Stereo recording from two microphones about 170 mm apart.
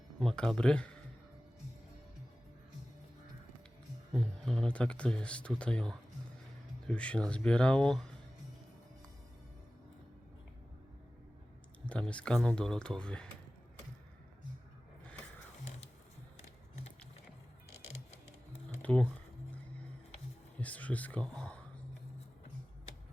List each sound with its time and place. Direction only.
0.2 s speech: 5° left (ahead or behind)
4.1 s speech: 5° left (ahead or behind)
11.9 s speech: 5° left (ahead or behind)
16.4 s a sound: 40° left (ahead or behind)
18.8 s typing: 5° left (ahead or behind)
20.6 s speech: 10° left (ahead or behind)